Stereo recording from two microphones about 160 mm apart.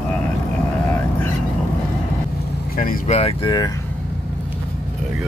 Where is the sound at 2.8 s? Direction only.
60° left (ahead or behind).